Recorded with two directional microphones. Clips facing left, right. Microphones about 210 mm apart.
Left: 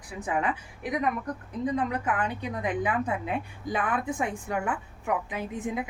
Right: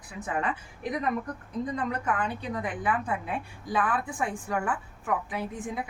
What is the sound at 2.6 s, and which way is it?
A woman's voice, 20° left (ahead or behind).